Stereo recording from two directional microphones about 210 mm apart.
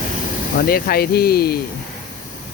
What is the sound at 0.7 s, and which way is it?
Speech, 45° left (ahead or behind).